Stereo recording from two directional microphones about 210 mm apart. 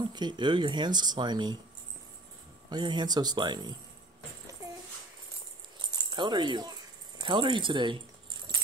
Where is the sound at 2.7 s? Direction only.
20° right (ahead or behind).